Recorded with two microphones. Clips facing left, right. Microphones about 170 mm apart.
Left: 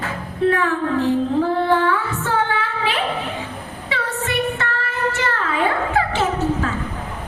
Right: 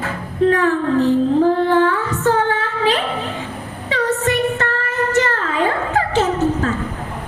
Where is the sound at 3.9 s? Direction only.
40° right (ahead or behind).